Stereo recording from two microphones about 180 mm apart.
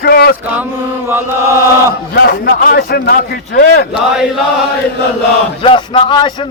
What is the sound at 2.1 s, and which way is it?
A man's voice, 65° left (ahead or behind).